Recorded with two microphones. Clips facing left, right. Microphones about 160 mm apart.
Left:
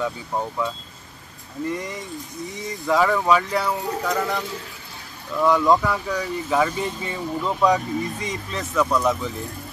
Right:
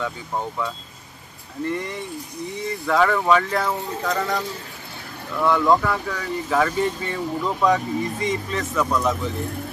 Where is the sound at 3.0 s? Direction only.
10° left (ahead or behind).